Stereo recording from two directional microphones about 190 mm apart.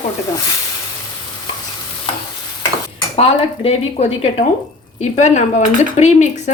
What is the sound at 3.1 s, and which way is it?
Speech, 30° left (ahead or behind).